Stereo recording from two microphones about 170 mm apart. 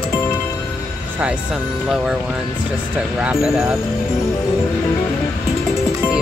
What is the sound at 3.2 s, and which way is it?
Speech, 5° right (ahead or behind).